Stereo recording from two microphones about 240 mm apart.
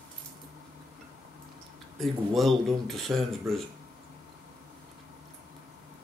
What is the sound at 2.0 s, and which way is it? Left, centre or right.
Speech, centre.